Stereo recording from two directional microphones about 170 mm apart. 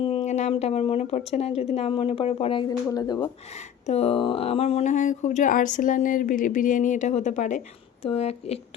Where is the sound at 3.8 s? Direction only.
40° left (ahead or behind).